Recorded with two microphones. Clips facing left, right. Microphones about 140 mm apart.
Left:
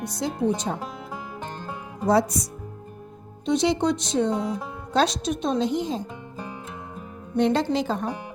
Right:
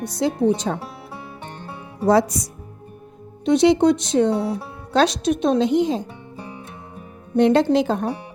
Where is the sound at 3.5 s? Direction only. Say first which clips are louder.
Right 7 dB; 65° right (ahead or behind).